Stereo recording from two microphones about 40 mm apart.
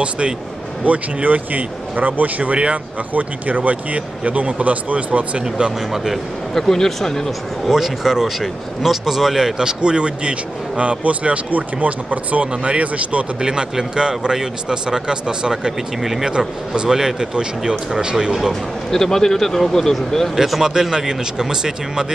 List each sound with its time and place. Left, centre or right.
0.8 s speech: right
6.5 s speech: centre
7.7 s speech: centre; by 13.2 s right
13.4 s speech: centre
16.0 s speech: centre
16.3 s speech: right
18.5 s speech: centre
20.3 s speech: centre
20.6 s speech: centre